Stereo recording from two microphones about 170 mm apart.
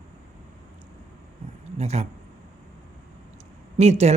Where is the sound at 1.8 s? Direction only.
40° right (ahead or behind).